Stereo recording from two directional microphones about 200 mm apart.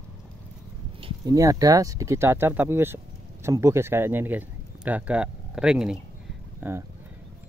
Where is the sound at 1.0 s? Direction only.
20° right (ahead or behind).